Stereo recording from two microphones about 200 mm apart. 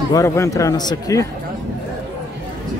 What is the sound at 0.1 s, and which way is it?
Speech, 15° left (ahead or behind).